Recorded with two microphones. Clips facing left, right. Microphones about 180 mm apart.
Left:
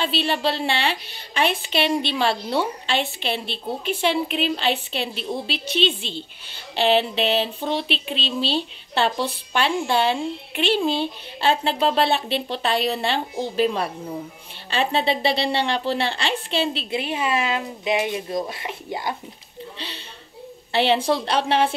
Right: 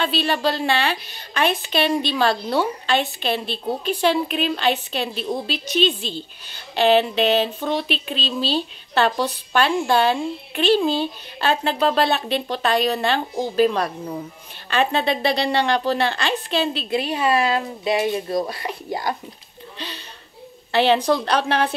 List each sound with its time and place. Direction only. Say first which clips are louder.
0.0 s speech: right 2 dB; 30° left (ahead or behind)
17.4 s speech: right 4 dB; 40° right (ahead or behind)
17.9 s speech: right 3 dB; 15° left (ahead or behind)
18.6 s speech: right 3 dB; 40° right (ahead or behind)
20.7 s speech: right 2 dB; 25° left (ahead or behind)